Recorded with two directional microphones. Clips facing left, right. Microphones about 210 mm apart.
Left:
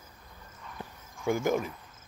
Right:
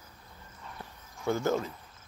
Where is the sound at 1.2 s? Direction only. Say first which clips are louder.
Left 1 dB; 15° left (ahead or behind).